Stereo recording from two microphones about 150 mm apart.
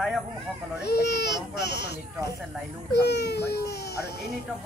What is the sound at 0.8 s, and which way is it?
Speech, 90° left.